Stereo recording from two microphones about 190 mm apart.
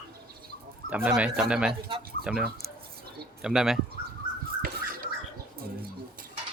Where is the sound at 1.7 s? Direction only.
25° right (ahead or behind).